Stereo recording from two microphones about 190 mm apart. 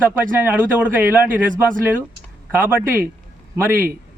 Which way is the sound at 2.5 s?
10° right (ahead or behind).